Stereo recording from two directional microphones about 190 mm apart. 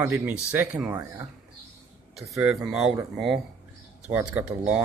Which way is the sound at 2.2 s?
15° right (ahead or behind).